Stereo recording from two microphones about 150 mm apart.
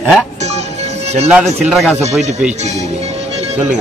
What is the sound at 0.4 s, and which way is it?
Music, 45° right (ahead or behind).